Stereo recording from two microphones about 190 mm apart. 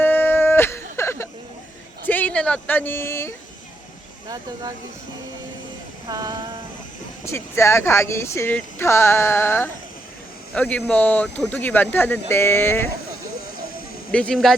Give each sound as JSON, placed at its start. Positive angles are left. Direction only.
{"t": 0.0, "sound": "music", "side_deg": 10}
{"t": 2.0, "sound": "speech", "side_deg": 10}
{"t": 6.1, "sound": "a sound", "side_deg": -20}
{"t": 7.3, "sound": "speech", "side_deg": 15}
{"t": 14.1, "sound": "speech", "side_deg": 5}